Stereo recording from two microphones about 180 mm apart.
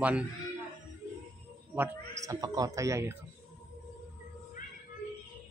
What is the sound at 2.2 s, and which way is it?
Speech, 20° right (ahead or behind).